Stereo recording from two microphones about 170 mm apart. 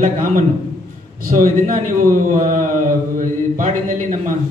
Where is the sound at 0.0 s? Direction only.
50° right (ahead or behind).